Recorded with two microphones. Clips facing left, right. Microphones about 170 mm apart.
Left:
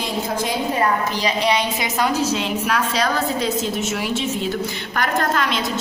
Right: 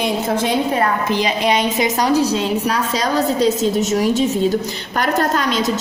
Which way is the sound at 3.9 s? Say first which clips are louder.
Right 7 dB; 40° right (ahead or behind).